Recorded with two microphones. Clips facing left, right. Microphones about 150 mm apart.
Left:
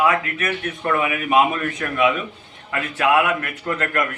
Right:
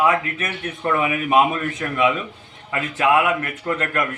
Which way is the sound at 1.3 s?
Centre (ahead or behind).